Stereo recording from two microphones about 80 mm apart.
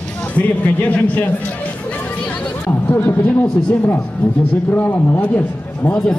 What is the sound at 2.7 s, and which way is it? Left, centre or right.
Speech, left.